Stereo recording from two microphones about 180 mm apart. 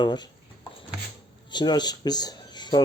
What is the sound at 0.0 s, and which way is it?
Speech, 25° left (ahead or behind).